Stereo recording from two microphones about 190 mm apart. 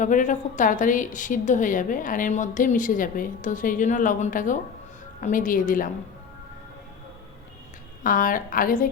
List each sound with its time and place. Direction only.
0.0 s a woman's voice: 40° left (ahead or behind)
8.0 s a woman's voice: 45° left (ahead or behind)